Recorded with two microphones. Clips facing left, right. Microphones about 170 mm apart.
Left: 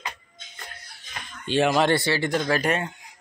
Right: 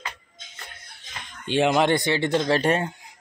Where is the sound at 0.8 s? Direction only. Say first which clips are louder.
Left 1 dB; 20° right (ahead or behind).